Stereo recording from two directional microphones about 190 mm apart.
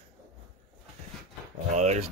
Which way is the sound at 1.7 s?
40° right (ahead or behind).